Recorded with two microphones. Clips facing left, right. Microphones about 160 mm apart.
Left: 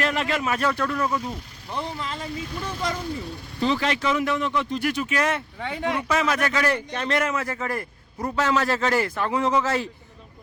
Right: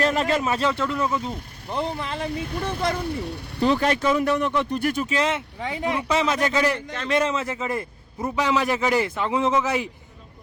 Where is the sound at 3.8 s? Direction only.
45° right (ahead or behind).